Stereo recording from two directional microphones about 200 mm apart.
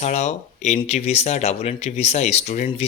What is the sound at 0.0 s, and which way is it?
Speech, 35° left (ahead or behind).